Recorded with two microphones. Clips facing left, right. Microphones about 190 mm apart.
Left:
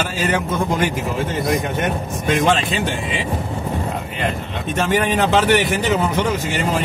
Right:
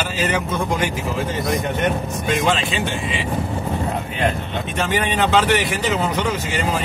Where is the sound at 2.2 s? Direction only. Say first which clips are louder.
Left 3 dB; 45° left (ahead or behind).